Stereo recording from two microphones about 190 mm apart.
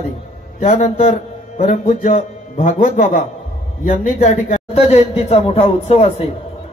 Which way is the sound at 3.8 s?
35° left (ahead or behind).